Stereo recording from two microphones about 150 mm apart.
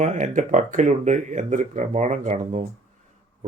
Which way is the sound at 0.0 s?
55° right (ahead or behind).